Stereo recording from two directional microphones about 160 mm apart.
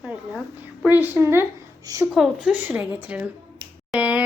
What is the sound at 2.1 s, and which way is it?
Female singing, 5° right (ahead or behind).